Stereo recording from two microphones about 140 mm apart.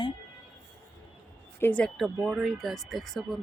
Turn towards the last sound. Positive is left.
turn(degrees=0)  # may be behind; listen again after turning